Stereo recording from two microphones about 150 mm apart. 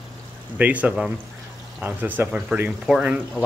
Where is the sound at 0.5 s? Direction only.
10° right (ahead or behind).